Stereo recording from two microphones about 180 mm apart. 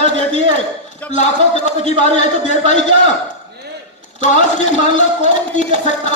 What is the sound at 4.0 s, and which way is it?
A man's voice, 40° left (ahead or behind).